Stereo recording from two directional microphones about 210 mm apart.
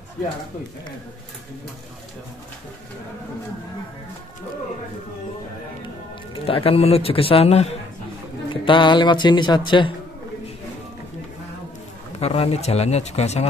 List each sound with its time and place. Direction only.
6.4 s speech: 25° left (ahead or behind)
12.2 s speech: 30° left (ahead or behind)